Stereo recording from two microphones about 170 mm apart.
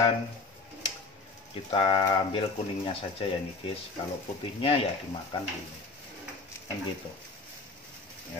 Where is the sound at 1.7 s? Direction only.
30° left (ahead or behind).